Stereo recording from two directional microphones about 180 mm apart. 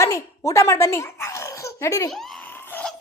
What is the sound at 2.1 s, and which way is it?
Laughter, centre (ahead or behind).